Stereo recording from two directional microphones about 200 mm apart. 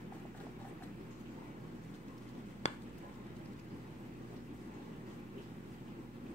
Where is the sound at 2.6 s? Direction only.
35° left (ahead or behind).